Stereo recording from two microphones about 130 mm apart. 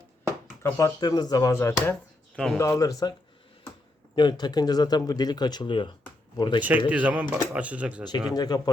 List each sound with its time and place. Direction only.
0.6 s speech: 25° left (ahead or behind)
2.3 s speech: 5° left (ahead or behind)
2.6 s speech: 25° left (ahead or behind)
4.1 s speech: 35° left (ahead or behind)
6.6 s speech: 10° right (ahead or behind)
8.3 s speech: 30° left (ahead or behind)